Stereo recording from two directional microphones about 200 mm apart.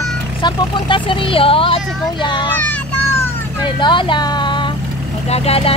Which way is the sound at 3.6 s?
25° left (ahead or behind).